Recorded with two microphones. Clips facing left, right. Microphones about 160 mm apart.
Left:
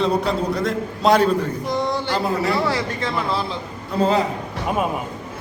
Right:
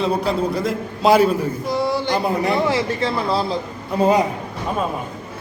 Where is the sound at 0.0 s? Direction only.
Centre (ahead or behind).